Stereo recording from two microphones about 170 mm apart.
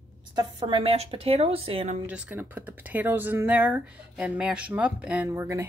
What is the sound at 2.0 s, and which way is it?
Speech, 10° right (ahead or behind).